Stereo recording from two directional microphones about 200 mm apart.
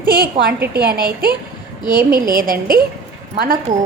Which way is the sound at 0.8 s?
50° right (ahead or behind).